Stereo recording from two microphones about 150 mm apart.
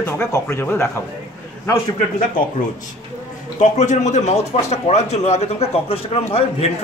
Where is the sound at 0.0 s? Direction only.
20° left (ahead or behind).